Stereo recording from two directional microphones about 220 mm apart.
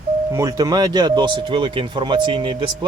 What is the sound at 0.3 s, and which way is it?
Speech, 15° right (ahead or behind).